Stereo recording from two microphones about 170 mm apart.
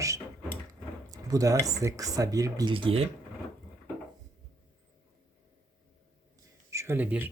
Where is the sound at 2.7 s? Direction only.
30° right (ahead or behind).